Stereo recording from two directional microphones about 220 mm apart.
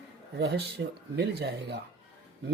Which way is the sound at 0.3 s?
50° right (ahead or behind).